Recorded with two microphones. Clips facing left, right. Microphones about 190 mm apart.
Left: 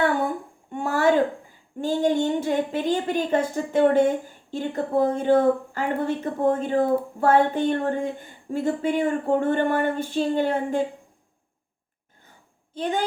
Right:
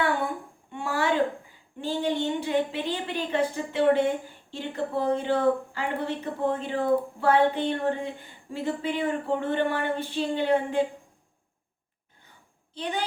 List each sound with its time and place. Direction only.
0.7 s a sound: 45° left (ahead or behind)
1.8 s a woman's voice: 45° left (ahead or behind)
12.7 s a woman's voice: 50° left (ahead or behind)